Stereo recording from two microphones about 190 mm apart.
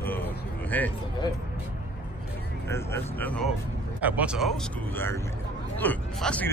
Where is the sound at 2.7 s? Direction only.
10° left (ahead or behind).